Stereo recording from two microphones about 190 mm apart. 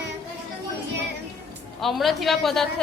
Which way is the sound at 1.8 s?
Centre (ahead or behind).